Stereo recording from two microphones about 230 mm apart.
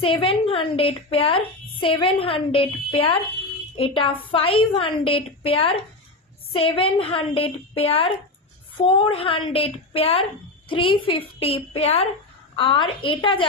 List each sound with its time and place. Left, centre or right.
0.0 s a woman's voice: left